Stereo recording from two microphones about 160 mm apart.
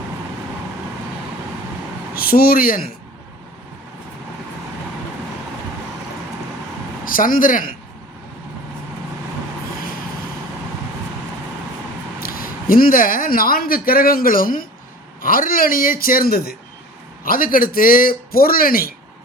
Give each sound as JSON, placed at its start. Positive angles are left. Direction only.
{"t": 2.1, "sound": "a man's voice", "side_deg": 65}
{"t": 7.0, "sound": "speech", "side_deg": 60}
{"t": 12.2, "sound": "a man's voice", "side_deg": 65}
{"t": 17.2, "sound": "a man's voice", "side_deg": 65}